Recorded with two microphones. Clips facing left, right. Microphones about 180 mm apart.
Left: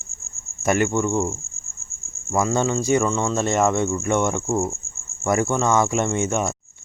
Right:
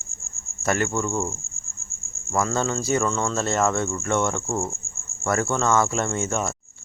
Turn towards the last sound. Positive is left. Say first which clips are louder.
# left 3 dB
turn(degrees=15)  # may be behind; listen again after turning